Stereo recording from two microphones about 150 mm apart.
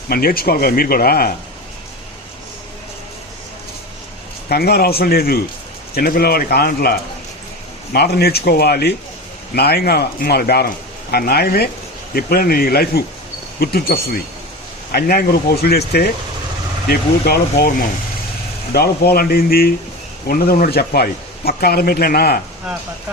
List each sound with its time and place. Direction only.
0.1 s speech: 85° left
4.4 s speech: 90° left
16.9 s speech: 90° left
20.2 s speech: 75° left (ahead or behind)